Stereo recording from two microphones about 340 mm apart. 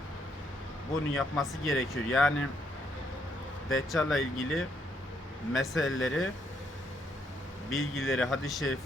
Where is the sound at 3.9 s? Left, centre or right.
Centre.